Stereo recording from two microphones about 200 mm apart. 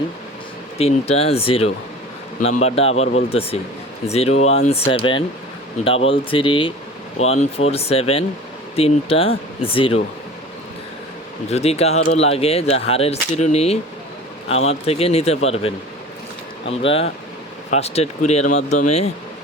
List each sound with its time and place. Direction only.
0.8 s speech: 30° left (ahead or behind)
11.4 s speech: 30° left (ahead or behind)